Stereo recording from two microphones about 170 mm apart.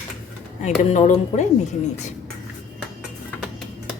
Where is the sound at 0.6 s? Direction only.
45° left (ahead or behind).